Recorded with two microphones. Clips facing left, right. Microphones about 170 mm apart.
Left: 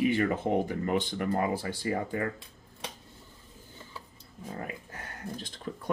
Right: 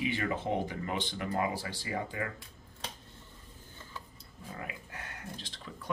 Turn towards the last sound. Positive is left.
turn(degrees=50)  # may be behind; listen again after turning